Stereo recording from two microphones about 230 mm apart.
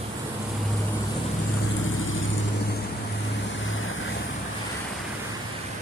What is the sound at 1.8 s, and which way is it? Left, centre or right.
Vehicle, left.